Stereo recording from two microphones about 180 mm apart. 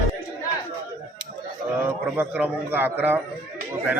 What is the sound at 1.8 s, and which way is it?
A man's voice, 10° right (ahead or behind).